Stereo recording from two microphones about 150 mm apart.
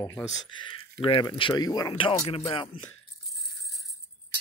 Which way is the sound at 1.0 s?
35° left (ahead or behind).